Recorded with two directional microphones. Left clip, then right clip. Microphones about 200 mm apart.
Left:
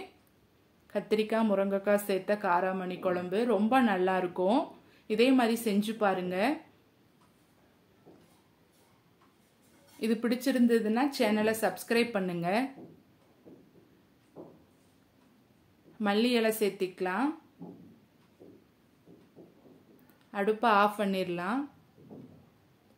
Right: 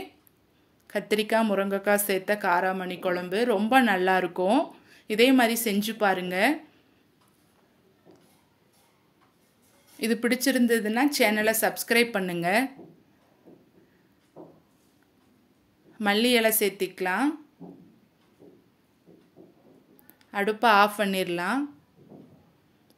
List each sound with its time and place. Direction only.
0.8 s a woman's voice: 30° right (ahead or behind)
9.9 s a woman's voice: 25° right (ahead or behind)
16.0 s a woman's voice: 30° right (ahead or behind)
20.2 s a woman's voice: 30° right (ahead or behind)